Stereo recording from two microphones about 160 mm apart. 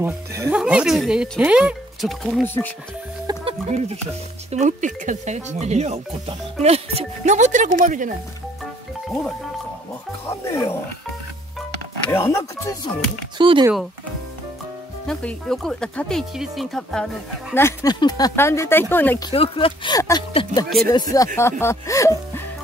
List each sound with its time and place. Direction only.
0.0 s speech: 15° right (ahead or behind); by 2.4 s centre (ahead or behind)
2.4 s speech: 15° left (ahead or behind)
3.3 s music: 25° right (ahead or behind)
3.6 s speech: 50° right (ahead or behind)
10.2 s speech: 15° left (ahead or behind)
12.1 s speech: 15° left (ahead or behind)
13.4 s speech: 30° right (ahead or behind)
15.0 s speech: 5° left (ahead or behind)
17.6 s speech: 15° left (ahead or behind)
19.3 s speech: 35° left (ahead or behind); by 22.1 s 20° left (ahead or behind)